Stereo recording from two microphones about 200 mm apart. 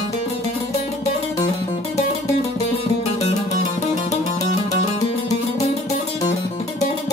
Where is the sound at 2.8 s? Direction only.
35° left (ahead or behind).